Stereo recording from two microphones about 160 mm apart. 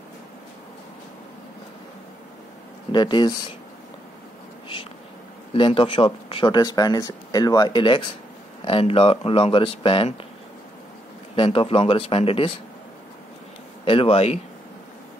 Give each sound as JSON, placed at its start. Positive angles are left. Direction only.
{"t": 2.9, "sound": "speech", "side_deg": 30}
{"t": 5.5, "sound": "speech", "side_deg": 35}
{"t": 11.3, "sound": "speech", "side_deg": 35}
{"t": 13.8, "sound": "speech", "side_deg": 35}